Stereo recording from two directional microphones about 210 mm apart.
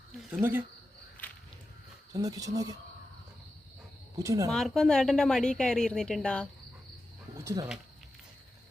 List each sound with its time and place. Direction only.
0.3 s speech: 5° right (ahead or behind)
2.1 s speech: 15° right (ahead or behind)
4.2 s speech: 15° right (ahead or behind)
4.5 s a woman's voice: centre (ahead or behind)
7.3 s speech: 15° right (ahead or behind)